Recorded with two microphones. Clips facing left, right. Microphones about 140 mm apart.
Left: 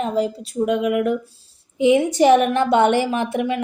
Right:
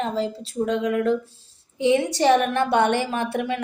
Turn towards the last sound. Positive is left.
turn(degrees=15)  # may be behind; listen again after turning